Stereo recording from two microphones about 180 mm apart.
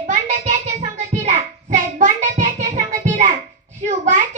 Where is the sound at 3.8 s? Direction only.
45° right (ahead or behind).